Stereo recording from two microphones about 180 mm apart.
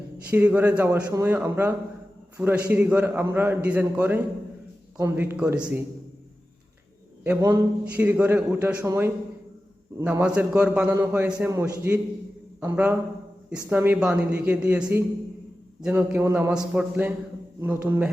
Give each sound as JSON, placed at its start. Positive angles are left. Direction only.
{"t": 0.3, "sound": "a man's voice", "side_deg": -10}
{"t": 7.4, "sound": "a man's voice", "side_deg": -10}